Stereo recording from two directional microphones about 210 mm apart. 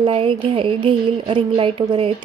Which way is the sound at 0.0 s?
25° right (ahead or behind).